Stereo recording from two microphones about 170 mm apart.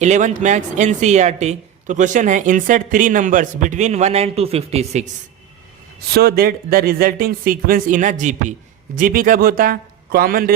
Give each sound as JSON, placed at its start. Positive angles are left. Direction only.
{"t": 0.0, "sound": "a woman's voice", "side_deg": -45}
{"t": 6.1, "sound": "a man's voice", "side_deg": -65}